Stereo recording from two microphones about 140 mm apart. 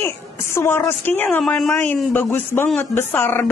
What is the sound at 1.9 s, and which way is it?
Speech, 15° left (ahead or behind).